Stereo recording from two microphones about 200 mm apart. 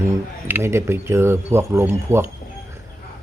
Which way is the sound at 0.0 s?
10° right (ahead or behind).